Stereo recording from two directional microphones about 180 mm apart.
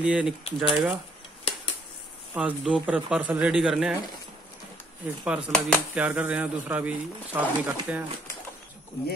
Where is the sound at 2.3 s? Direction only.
5° right (ahead or behind).